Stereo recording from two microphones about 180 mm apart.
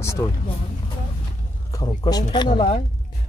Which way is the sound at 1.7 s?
20° left (ahead or behind).